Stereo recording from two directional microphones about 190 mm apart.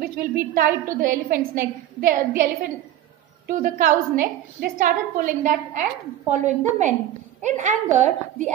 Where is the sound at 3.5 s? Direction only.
45° right (ahead or behind).